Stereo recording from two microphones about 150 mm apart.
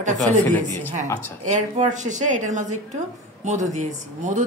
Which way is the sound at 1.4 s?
50° right (ahead or behind).